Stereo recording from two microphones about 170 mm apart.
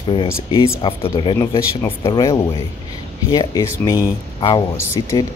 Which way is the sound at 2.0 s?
25° left (ahead or behind).